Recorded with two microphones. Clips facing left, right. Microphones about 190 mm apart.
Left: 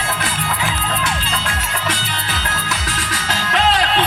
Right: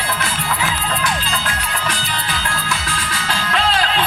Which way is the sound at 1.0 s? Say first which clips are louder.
Right 1 dB; 25° left (ahead or behind).